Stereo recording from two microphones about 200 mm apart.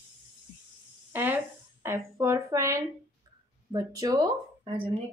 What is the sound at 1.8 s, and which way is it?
Speech, 15° right (ahead or behind).